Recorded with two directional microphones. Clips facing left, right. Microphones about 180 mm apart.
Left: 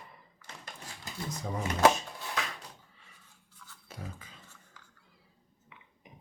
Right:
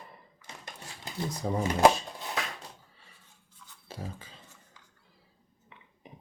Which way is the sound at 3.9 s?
30° right (ahead or behind).